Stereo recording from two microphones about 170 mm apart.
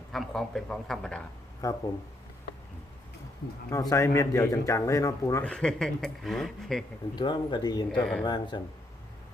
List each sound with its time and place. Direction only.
0.1 s speech: centre (ahead or behind)
1.6 s speech: 20° left (ahead or behind)
3.7 s a man's voice: 20° left (ahead or behind)
5.5 s speech: 5° left (ahead or behind)
7.2 s speech: 25° left (ahead or behind)
7.9 s speech: 5° left (ahead or behind)
8.2 s speech: 25° left (ahead or behind)